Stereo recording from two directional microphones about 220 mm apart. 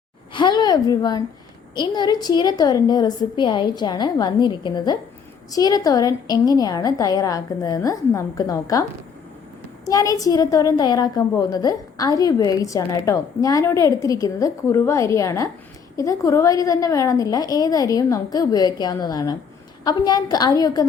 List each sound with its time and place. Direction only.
0.3 s a woman's voice: 20° left (ahead or behind)
9.8 s a woman's voice: 15° left (ahead or behind)